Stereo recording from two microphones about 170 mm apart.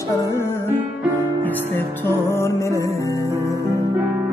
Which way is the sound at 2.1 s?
15° left (ahead or behind).